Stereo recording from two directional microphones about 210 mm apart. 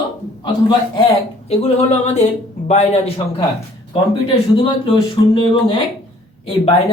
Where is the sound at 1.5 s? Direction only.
30° left (ahead or behind).